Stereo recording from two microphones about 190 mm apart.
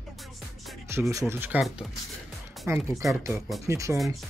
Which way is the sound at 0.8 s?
15° right (ahead or behind).